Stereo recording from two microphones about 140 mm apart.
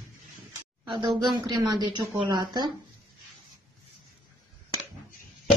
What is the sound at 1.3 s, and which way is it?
A woman's voice, 30° right (ahead or behind).